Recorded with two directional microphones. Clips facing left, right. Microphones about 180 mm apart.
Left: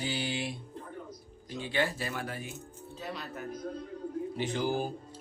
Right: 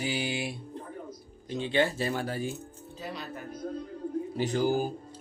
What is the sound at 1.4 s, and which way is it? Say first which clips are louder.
Speech: right 5 dB; 25° right (ahead or behind).